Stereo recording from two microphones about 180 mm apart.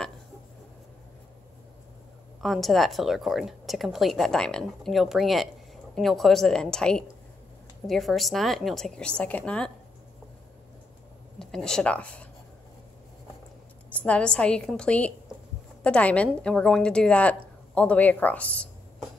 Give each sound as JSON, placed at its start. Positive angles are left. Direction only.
{"t": 2.4, "sound": "a woman's voice", "side_deg": 0}
{"t": 11.3, "sound": "a woman's voice", "side_deg": 5}
{"t": 13.9, "sound": "a woman's voice", "side_deg": 5}